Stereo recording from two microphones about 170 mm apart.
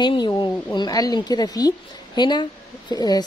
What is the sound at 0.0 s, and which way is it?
A woman's voice, 25° left (ahead or behind).